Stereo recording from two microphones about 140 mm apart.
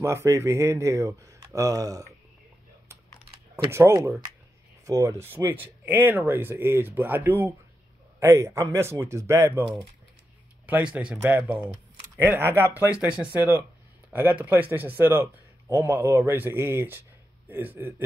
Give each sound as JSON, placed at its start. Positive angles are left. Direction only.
{"t": 0.0, "sound": "speech", "side_deg": -20}
{"t": 3.7, "sound": "speech", "side_deg": -20}
{"t": 10.7, "sound": "speech", "side_deg": -10}